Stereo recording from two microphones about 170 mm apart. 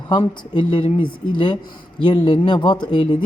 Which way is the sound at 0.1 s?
30° left (ahead or behind).